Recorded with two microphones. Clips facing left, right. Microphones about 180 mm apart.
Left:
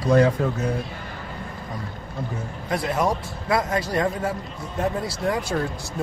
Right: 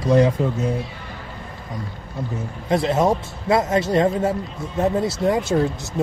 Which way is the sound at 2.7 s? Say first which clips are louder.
Right 5 dB; 25° right (ahead or behind).